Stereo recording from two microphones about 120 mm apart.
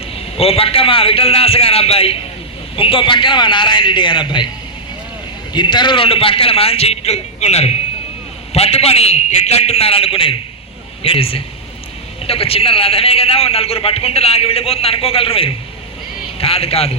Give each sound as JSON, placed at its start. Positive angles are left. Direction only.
{"t": 0.1, "sound": "a man's voice", "side_deg": 55}
{"t": 5.5, "sound": "a man's voice", "side_deg": 40}